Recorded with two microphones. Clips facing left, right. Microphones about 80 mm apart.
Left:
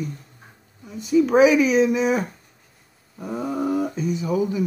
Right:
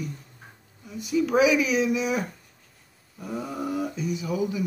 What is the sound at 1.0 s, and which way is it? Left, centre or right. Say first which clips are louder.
Speech: left 6 dB; left.